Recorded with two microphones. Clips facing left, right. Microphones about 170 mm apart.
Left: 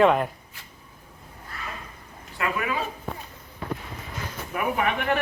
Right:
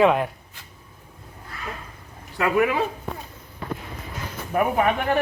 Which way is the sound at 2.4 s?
70° right (ahead or behind).